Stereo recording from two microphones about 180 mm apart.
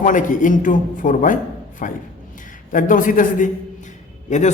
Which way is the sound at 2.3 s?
45° left (ahead or behind).